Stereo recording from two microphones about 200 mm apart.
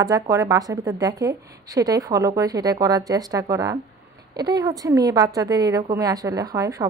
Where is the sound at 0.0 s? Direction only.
15° right (ahead or behind).